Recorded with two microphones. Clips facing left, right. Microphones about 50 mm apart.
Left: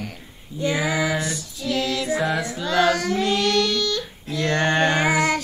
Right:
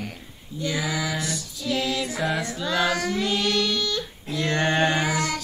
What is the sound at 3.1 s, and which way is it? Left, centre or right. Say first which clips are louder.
Mantra: left 4 dB; centre.